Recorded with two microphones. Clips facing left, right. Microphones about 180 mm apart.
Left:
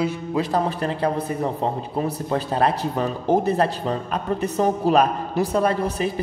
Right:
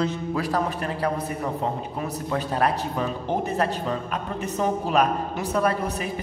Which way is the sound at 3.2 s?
40° left (ahead or behind).